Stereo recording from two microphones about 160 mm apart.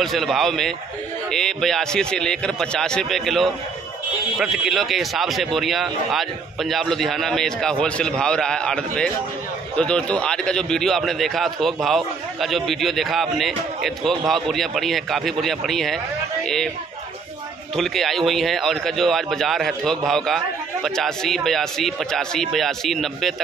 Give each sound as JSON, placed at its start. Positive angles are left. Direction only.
{"t": 0.0, "sound": "a man's voice", "side_deg": 0}
{"t": 17.7, "sound": "a man's voice", "side_deg": 0}